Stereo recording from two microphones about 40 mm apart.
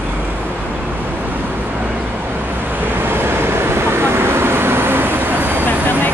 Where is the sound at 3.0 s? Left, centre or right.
Right.